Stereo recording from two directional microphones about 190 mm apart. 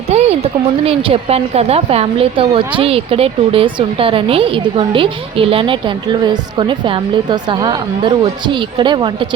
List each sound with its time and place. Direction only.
0.1 s speech: 35° right (ahead or behind)